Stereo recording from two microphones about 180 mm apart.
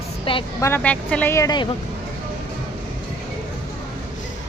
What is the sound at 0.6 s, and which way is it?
A woman's voice, 10° left (ahead or behind).